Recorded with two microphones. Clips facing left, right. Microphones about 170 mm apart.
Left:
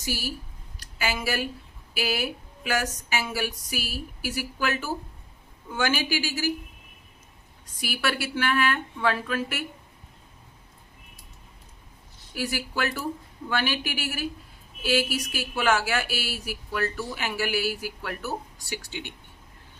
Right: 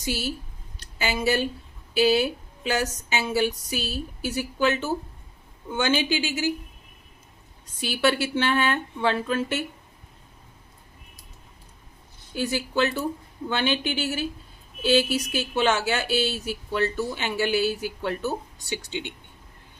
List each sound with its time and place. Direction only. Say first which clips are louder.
0.0 s speech: right 3 dB; 20° right (ahead or behind)
7.8 s speech: right 6 dB; 25° right (ahead or behind)
12.3 s speech: right 4 dB; 25° right (ahead or behind)